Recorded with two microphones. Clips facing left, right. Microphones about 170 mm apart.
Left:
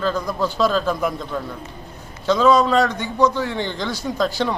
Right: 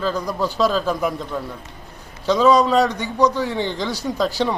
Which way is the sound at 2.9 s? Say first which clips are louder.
Even; 35° right (ahead or behind).